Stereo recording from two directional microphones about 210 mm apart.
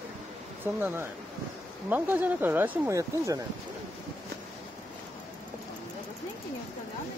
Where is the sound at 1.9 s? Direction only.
10° right (ahead or behind).